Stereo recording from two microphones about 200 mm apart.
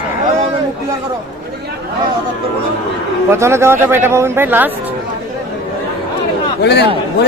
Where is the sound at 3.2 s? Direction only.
15° right (ahead or behind).